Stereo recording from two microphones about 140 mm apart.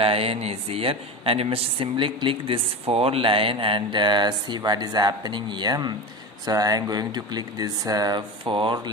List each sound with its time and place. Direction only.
0.0 s speech: 45° right (ahead or behind)